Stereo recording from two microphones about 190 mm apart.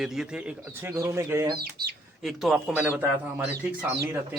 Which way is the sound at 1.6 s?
55° right (ahead or behind).